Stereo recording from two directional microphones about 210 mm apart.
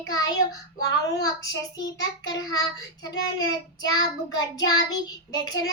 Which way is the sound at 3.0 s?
20° left (ahead or behind).